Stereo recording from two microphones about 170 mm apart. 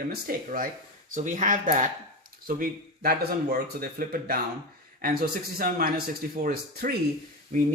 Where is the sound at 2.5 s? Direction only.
60° right (ahead or behind).